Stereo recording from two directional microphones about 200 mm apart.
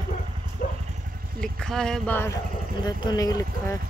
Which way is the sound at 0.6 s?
45° left (ahead or behind).